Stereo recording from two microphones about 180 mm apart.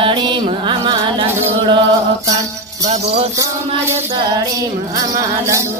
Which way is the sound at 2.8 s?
40° right (ahead or behind).